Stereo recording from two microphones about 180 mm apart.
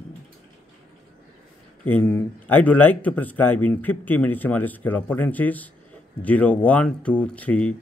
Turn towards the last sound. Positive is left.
turn(degrees=5)  # may be behind; listen again after turning